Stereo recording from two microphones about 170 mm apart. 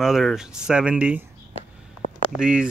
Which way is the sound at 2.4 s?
5° right (ahead or behind).